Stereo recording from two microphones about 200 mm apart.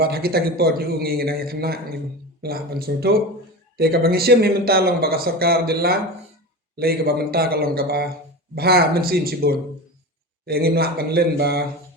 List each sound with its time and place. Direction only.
0.0 s speech: 50° right (ahead or behind)